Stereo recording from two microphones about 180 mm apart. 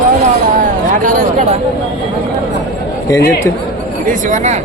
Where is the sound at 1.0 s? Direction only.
45° right (ahead or behind).